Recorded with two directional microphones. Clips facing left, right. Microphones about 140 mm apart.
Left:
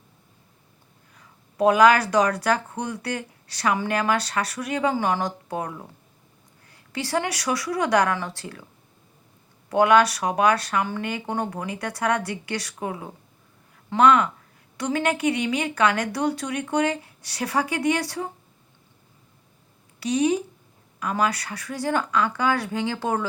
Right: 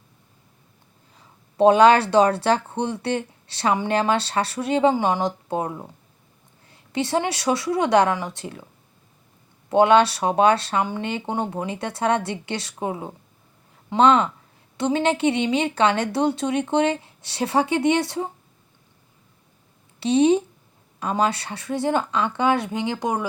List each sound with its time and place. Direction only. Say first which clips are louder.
1.1 s speech: right 5 dB; 25° right (ahead or behind)
9.6 s speech: right 2 dB; 25° right (ahead or behind)
20.0 s speech: right 5 dB; 25° right (ahead or behind)